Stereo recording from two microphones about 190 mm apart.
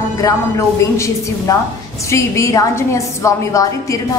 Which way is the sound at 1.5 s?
15° left (ahead or behind).